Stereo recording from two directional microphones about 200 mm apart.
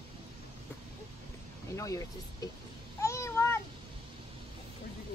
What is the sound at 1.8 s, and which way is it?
Speech, 15° left (ahead or behind).